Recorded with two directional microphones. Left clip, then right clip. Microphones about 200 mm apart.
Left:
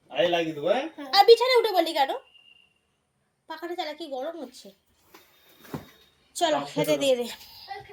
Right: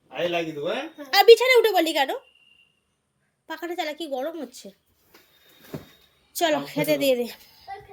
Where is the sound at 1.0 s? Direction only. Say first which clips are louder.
Right 3 dB; 35° right (ahead or behind).